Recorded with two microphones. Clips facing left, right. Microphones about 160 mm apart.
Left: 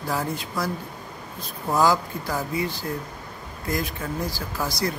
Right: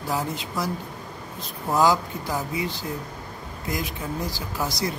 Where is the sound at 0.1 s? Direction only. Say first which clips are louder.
Even; 15° right (ahead or behind).